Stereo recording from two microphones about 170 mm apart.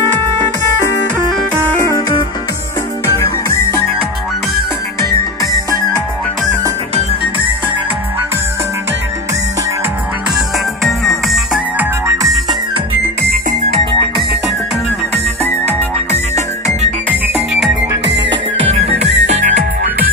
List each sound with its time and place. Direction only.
1.8 s music: 15° left (ahead or behind)
3.4 s music: 15° left (ahead or behind)
10.8 s music: centre (ahead or behind)
11.8 s music: 15° right (ahead or behind)
13.2 s music: 60° right (ahead or behind)
18.7 s music: 40° right (ahead or behind)